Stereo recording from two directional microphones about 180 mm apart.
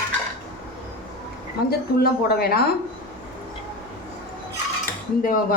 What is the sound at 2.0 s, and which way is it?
Speech, 55° left (ahead or behind).